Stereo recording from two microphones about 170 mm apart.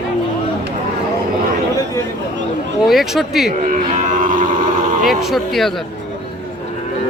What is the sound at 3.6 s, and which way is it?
Cattle, 50° right (ahead or behind).